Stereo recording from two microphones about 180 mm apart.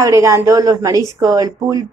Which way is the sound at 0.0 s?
15° right (ahead or behind).